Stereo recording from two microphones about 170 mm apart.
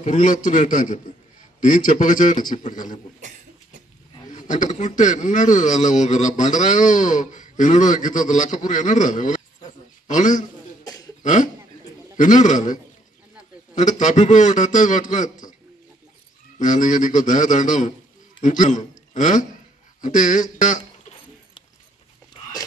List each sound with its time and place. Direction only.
0.0 s speech: 45° left (ahead or behind)
3.2 s cough: 45° right (ahead or behind)
4.3 s a man's voice: 45° left (ahead or behind)
10.8 s cough: 25° left (ahead or behind)
11.2 s speech: 45° left (ahead or behind)
13.7 s speech: 45° left (ahead or behind)
16.5 s a man's voice: 45° left (ahead or behind)